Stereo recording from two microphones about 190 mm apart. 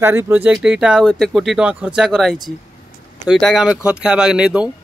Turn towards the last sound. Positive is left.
turn(degrees=-5)  # may be behind; listen again after turning